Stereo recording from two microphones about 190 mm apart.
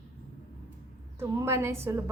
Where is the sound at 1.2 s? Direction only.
15° right (ahead or behind).